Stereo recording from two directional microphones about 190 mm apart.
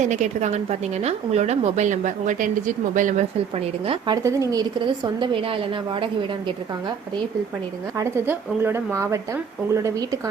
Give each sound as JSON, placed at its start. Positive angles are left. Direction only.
{"t": 0.0, "sound": "a woman's voice", "side_deg": -40}
{"t": 3.8, "sound": "a woman's voice", "side_deg": -20}
{"t": 5.2, "sound": "a woman's voice", "side_deg": -25}
{"t": 7.9, "sound": "speech", "side_deg": -10}